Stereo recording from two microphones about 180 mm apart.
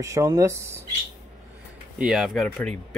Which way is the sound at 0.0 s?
20° right (ahead or behind).